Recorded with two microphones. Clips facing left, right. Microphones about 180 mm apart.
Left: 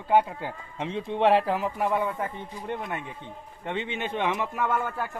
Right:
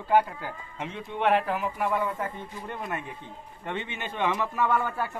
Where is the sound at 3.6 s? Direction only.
20° left (ahead or behind).